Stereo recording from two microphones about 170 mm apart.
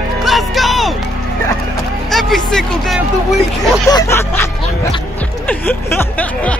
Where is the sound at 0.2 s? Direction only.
Centre (ahead or behind).